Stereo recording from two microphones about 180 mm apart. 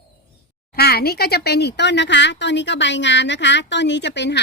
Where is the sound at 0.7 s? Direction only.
60° left (ahead or behind); by 4.4 s 75° left (ahead or behind).